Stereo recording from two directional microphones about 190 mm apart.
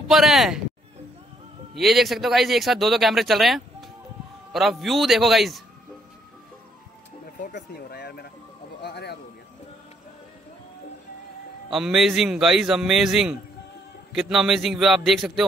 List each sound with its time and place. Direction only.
0.1 s speech: centre (ahead or behind)
1.8 s speech: centre (ahead or behind)
7.4 s speech: 55° left (ahead or behind)
11.7 s speech: centre (ahead or behind)